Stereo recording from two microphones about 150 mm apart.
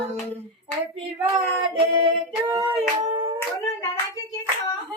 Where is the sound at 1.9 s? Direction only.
35° right (ahead or behind).